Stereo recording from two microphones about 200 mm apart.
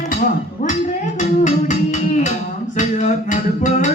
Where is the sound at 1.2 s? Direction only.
40° left (ahead or behind).